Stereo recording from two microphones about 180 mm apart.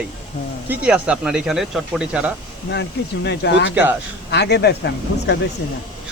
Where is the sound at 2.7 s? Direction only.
70° left (ahead or behind).